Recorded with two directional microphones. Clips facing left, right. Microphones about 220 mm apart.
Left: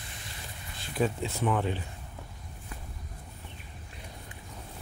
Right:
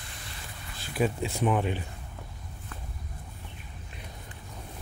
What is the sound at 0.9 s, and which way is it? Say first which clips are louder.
Speech: right 1 dB; 10° right (ahead or behind).